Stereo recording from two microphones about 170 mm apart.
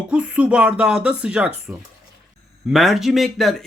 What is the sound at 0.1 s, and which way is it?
Speech, 5° right (ahead or behind).